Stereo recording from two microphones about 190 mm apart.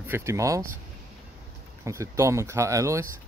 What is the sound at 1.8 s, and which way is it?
Speech, 15° right (ahead or behind).